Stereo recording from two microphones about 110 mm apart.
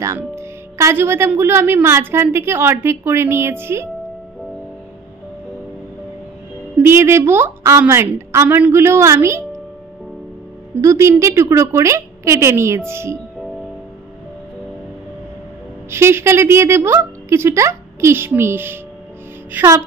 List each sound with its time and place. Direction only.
0.0 s a woman's voice: 25° right (ahead or behind)
6.8 s a woman's voice: 25° right (ahead or behind)
10.8 s a woman's voice: 25° right (ahead or behind)
15.9 s a woman's voice: 25° right (ahead or behind)